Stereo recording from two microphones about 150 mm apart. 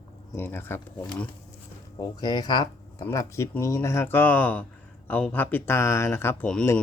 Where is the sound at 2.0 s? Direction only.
25° left (ahead or behind).